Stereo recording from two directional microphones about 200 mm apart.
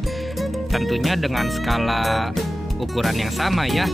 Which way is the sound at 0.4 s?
Centre (ahead or behind).